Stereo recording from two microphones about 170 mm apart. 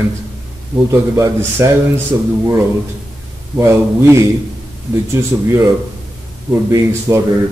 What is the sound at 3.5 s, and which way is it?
Speech, 15° right (ahead or behind).